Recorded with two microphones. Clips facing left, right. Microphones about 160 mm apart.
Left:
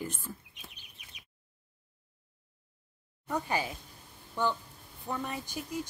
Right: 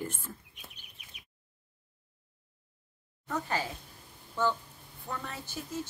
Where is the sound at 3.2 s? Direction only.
15° left (ahead or behind).